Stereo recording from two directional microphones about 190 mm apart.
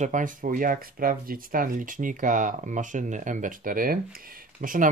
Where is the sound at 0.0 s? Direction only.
40° right (ahead or behind).